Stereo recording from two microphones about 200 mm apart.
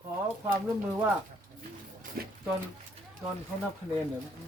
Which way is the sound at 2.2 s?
50° right (ahead or behind).